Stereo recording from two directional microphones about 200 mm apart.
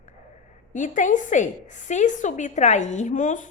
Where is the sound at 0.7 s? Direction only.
40° left (ahead or behind).